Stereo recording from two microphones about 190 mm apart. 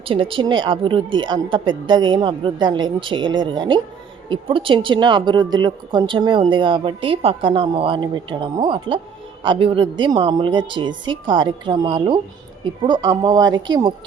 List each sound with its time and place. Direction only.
0.0 s speech: 30° right (ahead or behind)